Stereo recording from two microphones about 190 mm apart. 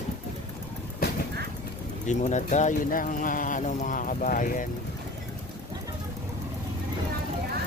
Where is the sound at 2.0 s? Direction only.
40° left (ahead or behind).